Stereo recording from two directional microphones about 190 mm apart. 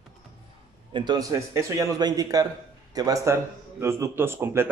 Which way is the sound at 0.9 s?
20° right (ahead or behind).